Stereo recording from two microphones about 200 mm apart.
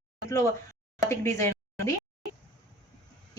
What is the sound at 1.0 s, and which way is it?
Speech, 15° left (ahead or behind).